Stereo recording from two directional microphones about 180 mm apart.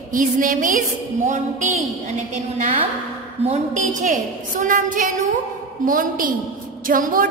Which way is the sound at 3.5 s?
45° right (ahead or behind).